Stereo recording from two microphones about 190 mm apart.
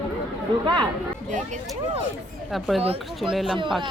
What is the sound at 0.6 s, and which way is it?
Speech, 25° right (ahead or behind).